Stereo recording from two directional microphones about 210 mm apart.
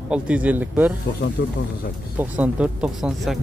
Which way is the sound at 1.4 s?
50° left (ahead or behind).